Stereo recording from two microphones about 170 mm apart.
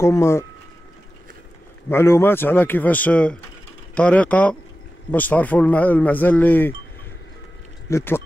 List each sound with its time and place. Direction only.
0.0 s a man's voice: 15° left (ahead or behind)
1.9 s a man's voice: 15° left (ahead or behind)
7.9 s a man's voice: 15° left (ahead or behind)